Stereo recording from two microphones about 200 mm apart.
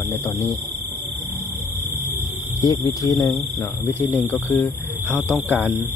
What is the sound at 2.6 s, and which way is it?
Speech, 15° left (ahead or behind).